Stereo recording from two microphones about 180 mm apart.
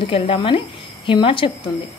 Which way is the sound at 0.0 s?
30° left (ahead or behind).